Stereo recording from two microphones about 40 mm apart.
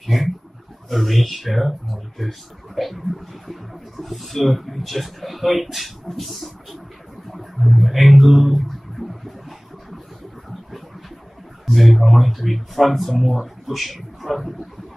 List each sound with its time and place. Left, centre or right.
0.0 s roaring cats: centre
0.8 s speech: centre
7.2 s a sound: centre
11.6 s speech: centre